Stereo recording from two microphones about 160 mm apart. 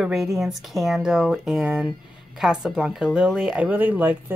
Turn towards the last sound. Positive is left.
turn(degrees=-10)  # may be behind; listen again after turning